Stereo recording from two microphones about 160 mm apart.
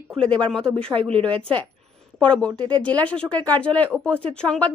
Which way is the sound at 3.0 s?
5° left (ahead or behind).